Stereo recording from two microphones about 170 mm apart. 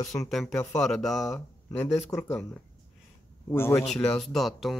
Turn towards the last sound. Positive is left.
turn(degrees=0)  # may be behind; listen again after turning